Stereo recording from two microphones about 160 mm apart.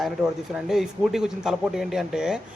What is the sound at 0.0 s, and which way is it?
Speech, 5° right (ahead or behind).